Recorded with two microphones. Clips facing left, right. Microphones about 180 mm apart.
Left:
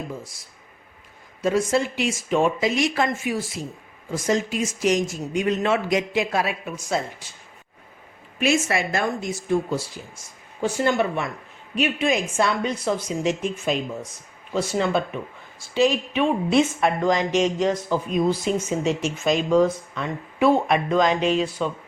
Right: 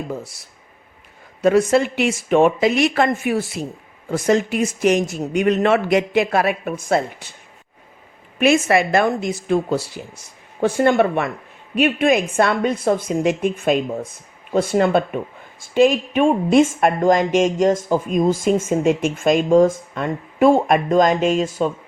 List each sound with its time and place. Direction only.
1.4 s a man's voice: 65° right (ahead or behind)
8.4 s a man's voice: 60° right (ahead or behind)
10.6 s a man's voice: 55° right (ahead or behind)